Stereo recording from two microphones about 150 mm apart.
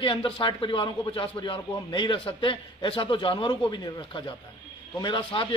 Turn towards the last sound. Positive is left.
turn(degrees=35)  # may be behind; listen again after turning